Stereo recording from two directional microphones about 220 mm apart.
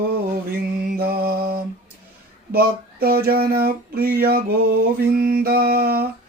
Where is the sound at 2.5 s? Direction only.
45° right (ahead or behind).